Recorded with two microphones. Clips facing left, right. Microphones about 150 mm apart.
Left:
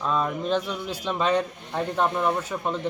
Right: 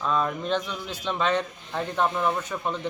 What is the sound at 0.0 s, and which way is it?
A man's voice, 5° left (ahead or behind).